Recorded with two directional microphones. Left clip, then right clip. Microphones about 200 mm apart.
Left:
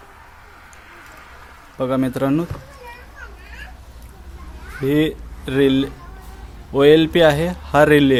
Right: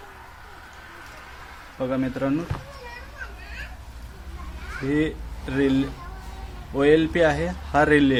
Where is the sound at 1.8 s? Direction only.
55° left (ahead or behind).